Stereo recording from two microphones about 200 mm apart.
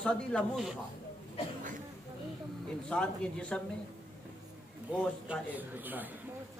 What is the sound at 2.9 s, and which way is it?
Speech, 5° left (ahead or behind).